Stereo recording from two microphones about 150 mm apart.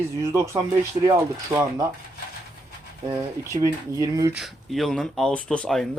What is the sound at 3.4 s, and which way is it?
Speech, 20° right (ahead or behind).